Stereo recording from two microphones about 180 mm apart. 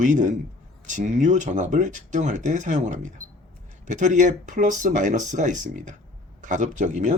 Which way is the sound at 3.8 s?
45° right (ahead or behind).